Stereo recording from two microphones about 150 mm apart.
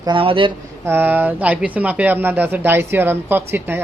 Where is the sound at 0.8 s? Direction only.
15° right (ahead or behind).